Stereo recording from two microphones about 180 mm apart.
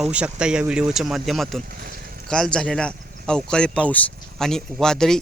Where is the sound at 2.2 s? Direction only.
5° left (ahead or behind).